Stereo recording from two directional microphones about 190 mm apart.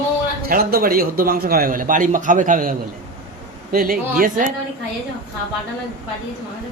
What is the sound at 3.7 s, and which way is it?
Speech, 50° right (ahead or behind).